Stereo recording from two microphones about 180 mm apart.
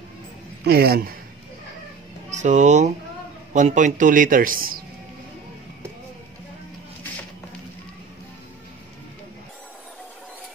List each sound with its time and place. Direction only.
0.7 s a man's voice: 60° right (ahead or behind)
2.3 s speech: 40° right (ahead or behind)